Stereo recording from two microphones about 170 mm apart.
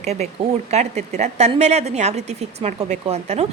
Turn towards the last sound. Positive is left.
turn(degrees=-40)  # may be behind; listen again after turning